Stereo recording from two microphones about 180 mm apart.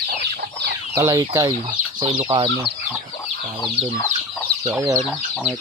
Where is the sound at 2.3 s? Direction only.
30° right (ahead or behind).